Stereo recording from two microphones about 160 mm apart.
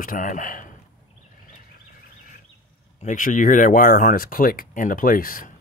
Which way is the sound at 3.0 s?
55° left (ahead or behind).